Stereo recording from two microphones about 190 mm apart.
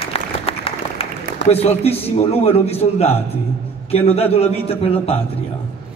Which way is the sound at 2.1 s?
30° left (ahead or behind).